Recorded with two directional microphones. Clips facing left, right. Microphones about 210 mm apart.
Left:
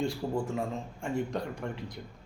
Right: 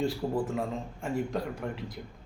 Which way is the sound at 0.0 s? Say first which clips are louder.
Right 2 dB; centre (ahead or behind).